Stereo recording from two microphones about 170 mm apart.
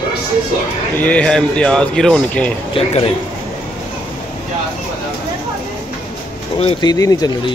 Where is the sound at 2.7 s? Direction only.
30° left (ahead or behind).